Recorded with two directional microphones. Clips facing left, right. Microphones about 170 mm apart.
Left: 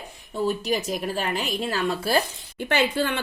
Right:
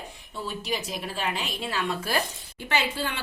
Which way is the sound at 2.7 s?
55° left (ahead or behind).